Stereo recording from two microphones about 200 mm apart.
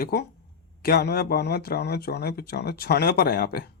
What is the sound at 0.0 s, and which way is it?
A man's voice, 50° left (ahead or behind).